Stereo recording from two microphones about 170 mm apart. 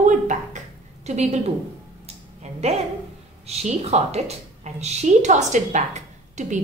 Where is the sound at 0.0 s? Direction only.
45° right (ahead or behind).